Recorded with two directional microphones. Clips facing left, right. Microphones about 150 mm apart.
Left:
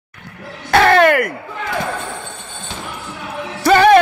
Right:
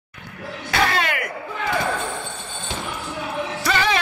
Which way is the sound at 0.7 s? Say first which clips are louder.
Left 11 dB; 60° left (ahead or behind).